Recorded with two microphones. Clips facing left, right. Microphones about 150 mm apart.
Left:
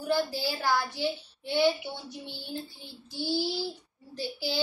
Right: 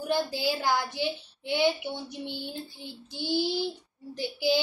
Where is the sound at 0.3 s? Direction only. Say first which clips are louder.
Right 1 dB; 15° right (ahead or behind).